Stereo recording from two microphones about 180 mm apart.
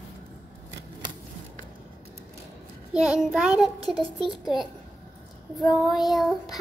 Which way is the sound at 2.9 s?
5° right (ahead or behind).